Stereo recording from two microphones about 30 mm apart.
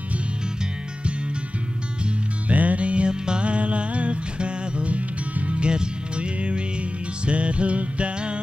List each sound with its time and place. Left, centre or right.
2.4 s music: right
3.1 s music: right
3.4 s music: right
5.7 s music: right